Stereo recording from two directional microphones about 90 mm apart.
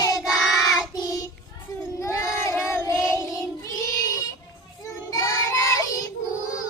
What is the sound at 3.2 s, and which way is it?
Child singing, 40° left (ahead or behind).